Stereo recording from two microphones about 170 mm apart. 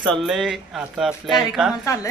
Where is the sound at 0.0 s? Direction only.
Centre (ahead or behind).